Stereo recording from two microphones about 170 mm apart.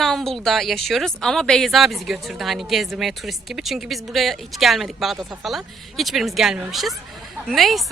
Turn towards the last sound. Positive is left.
turn(degrees=0)  # may be behind; listen again after turning